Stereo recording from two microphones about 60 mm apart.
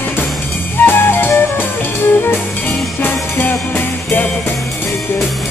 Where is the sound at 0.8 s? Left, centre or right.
Left.